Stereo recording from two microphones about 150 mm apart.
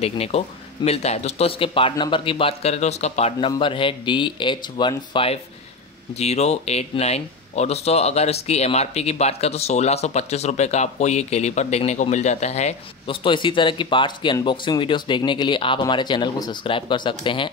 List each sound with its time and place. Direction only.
0.0 s speech: 45° left (ahead or behind)
6.1 s speech: 45° left (ahead or behind)